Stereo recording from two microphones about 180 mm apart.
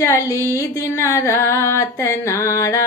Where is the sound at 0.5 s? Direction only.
15° left (ahead or behind).